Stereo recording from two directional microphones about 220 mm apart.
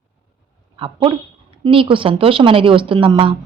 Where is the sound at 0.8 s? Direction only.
25° right (ahead or behind).